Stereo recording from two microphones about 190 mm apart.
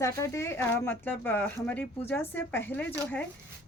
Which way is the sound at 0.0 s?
15° left (ahead or behind).